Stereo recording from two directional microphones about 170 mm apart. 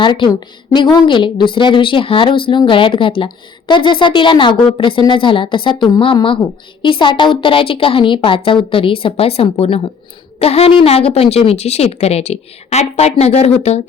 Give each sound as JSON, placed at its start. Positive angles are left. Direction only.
{"t": 0.0, "sound": "a woman's voice", "side_deg": 25}